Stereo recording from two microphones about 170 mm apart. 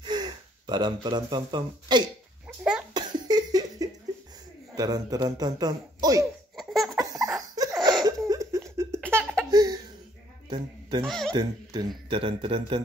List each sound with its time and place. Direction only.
0.0 s speech: 25° right (ahead or behind)
2.4 s cough: 5° right (ahead or behind)
2.9 s cough: 25° right (ahead or behind)
4.7 s a man's voice: 20° right (ahead or behind)
6.5 s laughter: centre (ahead or behind)
7.5 s laughter: 20° right (ahead or behind)
9.1 s laughter: 5° left (ahead or behind)
9.5 s laughter: 25° right (ahead or behind)
10.5 s a sound: 25° right (ahead or behind)
11.1 s speech: centre (ahead or behind)
11.3 s a man's voice: 25° right (ahead or behind)